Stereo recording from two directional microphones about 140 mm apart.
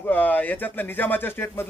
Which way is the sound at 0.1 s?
10° left (ahead or behind).